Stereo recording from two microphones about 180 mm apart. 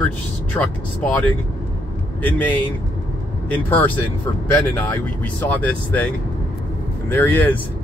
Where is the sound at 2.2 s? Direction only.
10° left (ahead or behind).